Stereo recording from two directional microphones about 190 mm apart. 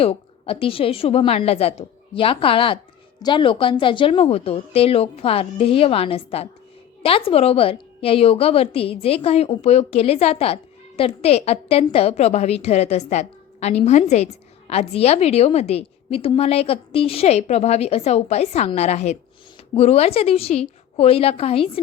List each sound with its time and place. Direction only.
0.0 s a woman's voice: 30° left (ahead or behind)